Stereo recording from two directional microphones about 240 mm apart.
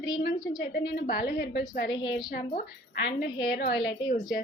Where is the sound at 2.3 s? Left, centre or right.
Left.